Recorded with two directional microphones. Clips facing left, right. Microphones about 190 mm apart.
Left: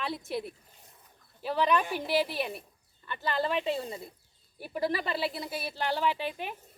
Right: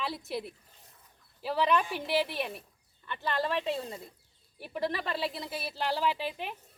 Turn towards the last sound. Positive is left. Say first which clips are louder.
# left 1 dB
turn(degrees=0)  # may be behind; listen again after turning